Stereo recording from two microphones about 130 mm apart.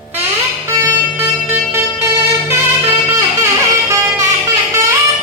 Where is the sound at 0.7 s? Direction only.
20° right (ahead or behind).